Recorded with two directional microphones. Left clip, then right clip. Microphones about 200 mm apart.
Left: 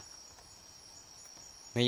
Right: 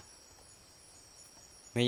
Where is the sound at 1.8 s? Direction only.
10° right (ahead or behind).